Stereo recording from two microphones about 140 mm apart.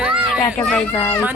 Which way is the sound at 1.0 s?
15° left (ahead or behind).